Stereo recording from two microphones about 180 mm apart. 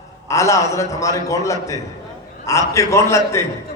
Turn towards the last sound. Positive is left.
turn(degrees=15)  # may be behind; listen again after turning